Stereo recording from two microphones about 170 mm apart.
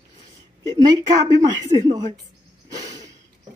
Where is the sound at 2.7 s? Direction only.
20° right (ahead or behind).